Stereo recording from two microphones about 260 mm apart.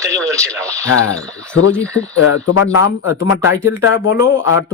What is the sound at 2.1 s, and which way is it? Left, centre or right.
Speech, left.